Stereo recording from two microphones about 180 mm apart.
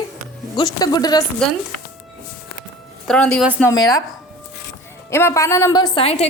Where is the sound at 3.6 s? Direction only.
20° left (ahead or behind).